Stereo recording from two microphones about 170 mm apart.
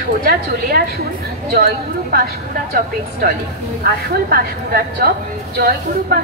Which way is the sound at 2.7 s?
60° right (ahead or behind).